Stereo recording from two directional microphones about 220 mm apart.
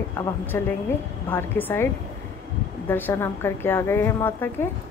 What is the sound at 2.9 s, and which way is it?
A woman's voice, 10° left (ahead or behind).